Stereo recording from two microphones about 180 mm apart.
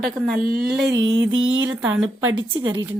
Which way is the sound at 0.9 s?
75° right (ahead or behind).